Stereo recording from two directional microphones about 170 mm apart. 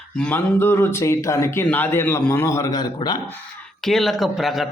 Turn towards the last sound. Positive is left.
turn(degrees=0)  # may be behind; listen again after turning